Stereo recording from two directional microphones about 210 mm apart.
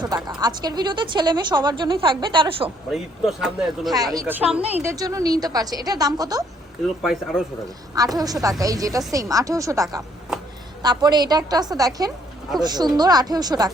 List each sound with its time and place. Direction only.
0.3 s a woman's voice: 20° right (ahead or behind)
2.6 s speech: centre (ahead or behind)
3.9 s a woman's voice: 15° right (ahead or behind)
7.0 s speech: 5° right (ahead or behind)
7.9 s a woman's voice: 15° right (ahead or behind)